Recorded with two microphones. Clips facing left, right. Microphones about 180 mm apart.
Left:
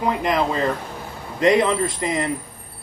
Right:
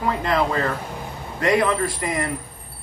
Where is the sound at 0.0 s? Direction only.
20° left (ahead or behind).